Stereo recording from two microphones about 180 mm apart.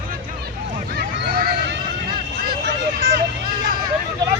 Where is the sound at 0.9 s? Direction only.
55° right (ahead or behind).